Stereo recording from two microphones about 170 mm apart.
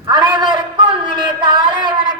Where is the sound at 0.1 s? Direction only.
25° right (ahead or behind).